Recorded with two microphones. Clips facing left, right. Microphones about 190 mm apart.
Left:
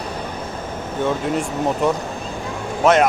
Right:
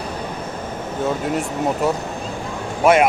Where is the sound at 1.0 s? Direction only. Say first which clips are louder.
Left 1 dB; 5° right (ahead or behind).